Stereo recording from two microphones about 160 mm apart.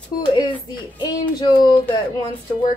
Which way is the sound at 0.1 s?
25° left (ahead or behind).